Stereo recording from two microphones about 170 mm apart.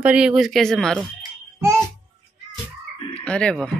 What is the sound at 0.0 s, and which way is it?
Speech, 5° right (ahead or behind).